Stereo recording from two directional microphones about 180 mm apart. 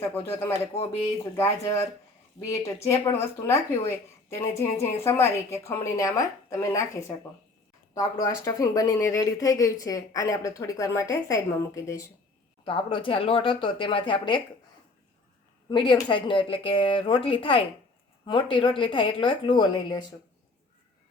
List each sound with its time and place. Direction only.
0.1 s a woman's voice: 10° left (ahead or behind)
0.7 s speech: 35° left (ahead or behind)
1.4 s a woman's voice: 15° left (ahead or behind)
3.1 s a woman's voice: 15° left (ahead or behind)
12.6 s speech: 30° left (ahead or behind)
15.7 s speech: 25° left (ahead or behind)